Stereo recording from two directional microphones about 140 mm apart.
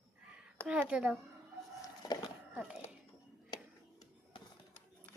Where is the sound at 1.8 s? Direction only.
25° left (ahead or behind).